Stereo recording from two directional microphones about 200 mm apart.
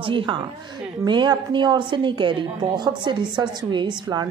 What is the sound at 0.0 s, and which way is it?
Speech, 25° right (ahead or behind).